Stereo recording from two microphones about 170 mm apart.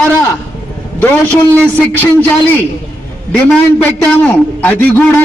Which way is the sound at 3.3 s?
10° left (ahead or behind).